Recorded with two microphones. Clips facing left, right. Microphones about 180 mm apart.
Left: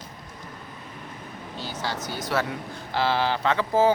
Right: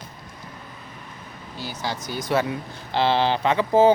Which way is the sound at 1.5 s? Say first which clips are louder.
Right 1 dB; 15° right (ahead or behind).